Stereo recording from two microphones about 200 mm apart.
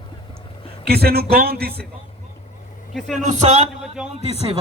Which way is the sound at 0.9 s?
50° right (ahead or behind).